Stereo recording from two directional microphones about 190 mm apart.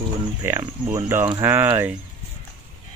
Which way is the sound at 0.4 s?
15° right (ahead or behind).